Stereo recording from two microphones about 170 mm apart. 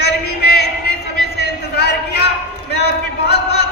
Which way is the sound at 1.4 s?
70° left (ahead or behind).